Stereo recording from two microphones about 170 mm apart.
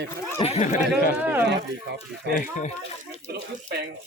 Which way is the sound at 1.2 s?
10° right (ahead or behind).